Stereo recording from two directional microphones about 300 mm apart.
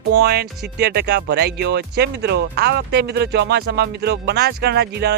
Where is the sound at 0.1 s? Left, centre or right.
Right.